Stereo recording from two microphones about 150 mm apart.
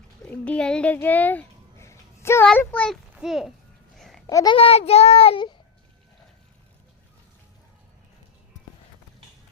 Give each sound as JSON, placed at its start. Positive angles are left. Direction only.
{"t": 0.3, "sound": "speech", "side_deg": 10}
{"t": 1.0, "sound": "a sound", "side_deg": 10}
{"t": 2.5, "sound": "a child's voice", "side_deg": 10}
{"t": 3.2, "sound": "speech", "side_deg": 0}
{"t": 3.9, "sound": "babbling", "side_deg": 0}
{"t": 4.3, "sound": "a child's voice", "side_deg": 20}
{"t": 4.5, "sound": "child singing", "side_deg": 40}